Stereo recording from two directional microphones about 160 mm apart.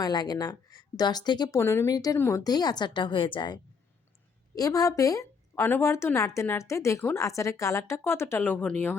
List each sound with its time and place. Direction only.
0.0 s a woman's voice: 25° left (ahead or behind); by 9.0 s 10° left (ahead or behind)